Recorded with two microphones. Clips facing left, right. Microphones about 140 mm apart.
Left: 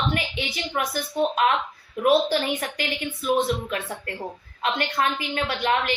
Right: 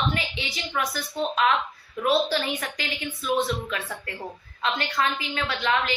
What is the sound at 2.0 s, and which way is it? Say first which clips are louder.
Speech: left 3 dB; 50° left (ahead or behind).